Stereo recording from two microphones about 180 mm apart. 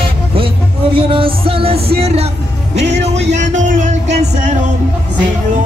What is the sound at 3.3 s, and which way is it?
Music, 40° right (ahead or behind).